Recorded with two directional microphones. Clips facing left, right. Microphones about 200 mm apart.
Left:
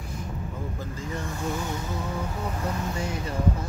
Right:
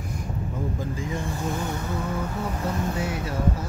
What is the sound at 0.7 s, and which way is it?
Vehicle, 15° right (ahead or behind).